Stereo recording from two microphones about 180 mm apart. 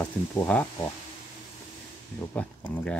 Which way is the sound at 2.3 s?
10° left (ahead or behind).